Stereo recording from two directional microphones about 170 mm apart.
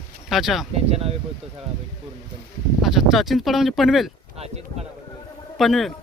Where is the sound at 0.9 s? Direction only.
35° right (ahead or behind).